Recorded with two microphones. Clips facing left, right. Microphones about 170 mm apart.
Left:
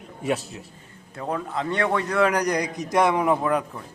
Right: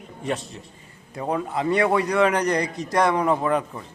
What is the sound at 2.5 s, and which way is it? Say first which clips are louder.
Speech: right 1 dB; 15° left (ahead or behind).